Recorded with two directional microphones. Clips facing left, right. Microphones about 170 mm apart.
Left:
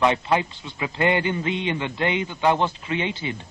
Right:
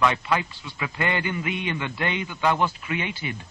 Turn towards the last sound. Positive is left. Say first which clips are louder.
# left 3 dB
turn(degrees=25)  # may be behind; listen again after turning